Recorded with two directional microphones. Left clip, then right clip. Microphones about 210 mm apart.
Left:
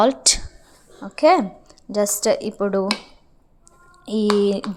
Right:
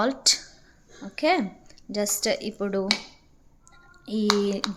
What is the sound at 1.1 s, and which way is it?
Speech, 15° left (ahead or behind).